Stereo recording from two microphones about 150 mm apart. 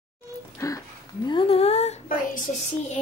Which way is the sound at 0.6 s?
20° left (ahead or behind).